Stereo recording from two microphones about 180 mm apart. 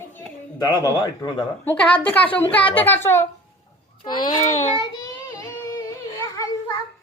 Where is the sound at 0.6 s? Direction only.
25° left (ahead or behind).